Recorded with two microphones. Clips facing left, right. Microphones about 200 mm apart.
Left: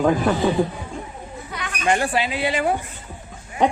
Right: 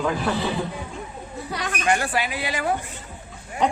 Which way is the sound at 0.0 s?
45° left (ahead or behind).